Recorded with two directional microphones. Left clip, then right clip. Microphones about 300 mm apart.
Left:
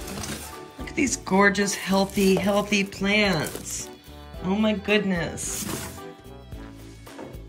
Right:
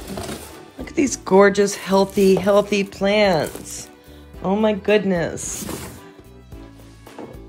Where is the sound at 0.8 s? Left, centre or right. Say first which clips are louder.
Right 5 dB; right.